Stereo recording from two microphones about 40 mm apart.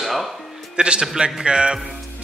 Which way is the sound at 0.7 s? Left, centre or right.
Right.